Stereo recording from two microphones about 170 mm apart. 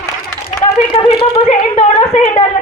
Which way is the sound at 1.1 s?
35° left (ahead or behind).